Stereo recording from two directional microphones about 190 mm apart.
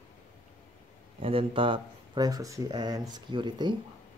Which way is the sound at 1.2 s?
30° right (ahead or behind).